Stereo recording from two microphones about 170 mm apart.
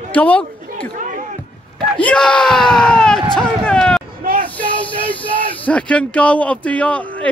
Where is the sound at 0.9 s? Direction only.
50° right (ahead or behind).